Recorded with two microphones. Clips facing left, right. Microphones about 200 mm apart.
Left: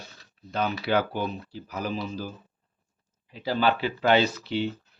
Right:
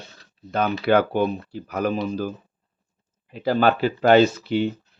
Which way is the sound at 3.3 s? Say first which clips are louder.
Right 5 dB; 50° right (ahead or behind).